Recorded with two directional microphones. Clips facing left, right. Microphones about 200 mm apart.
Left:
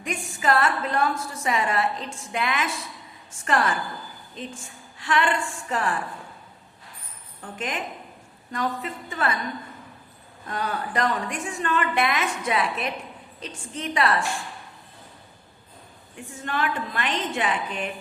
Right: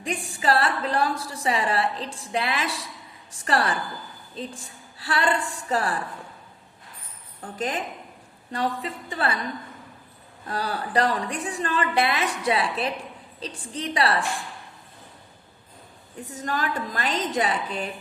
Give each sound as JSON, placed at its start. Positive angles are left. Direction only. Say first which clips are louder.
{"t": 0.0, "sound": "a woman's voice", "louder": "right 1 dB", "side_deg": -35}
{"t": 7.4, "sound": "a woman's voice", "louder": "right 2 dB", "side_deg": -35}
{"t": 10.4, "sound": "a woman's voice", "louder": "even", "side_deg": -35}
{"t": 16.1, "sound": "a woman's voice", "louder": "even", "side_deg": -40}